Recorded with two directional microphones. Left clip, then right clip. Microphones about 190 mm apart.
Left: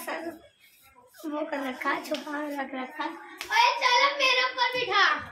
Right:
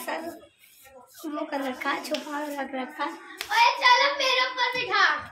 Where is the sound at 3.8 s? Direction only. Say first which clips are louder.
Right 2 dB; centre (ahead or behind).